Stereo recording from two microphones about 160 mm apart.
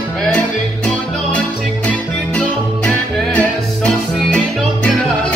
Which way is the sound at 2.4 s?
10° left (ahead or behind).